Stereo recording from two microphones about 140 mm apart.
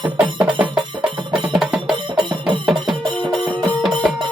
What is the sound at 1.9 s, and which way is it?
Music, 35° right (ahead or behind).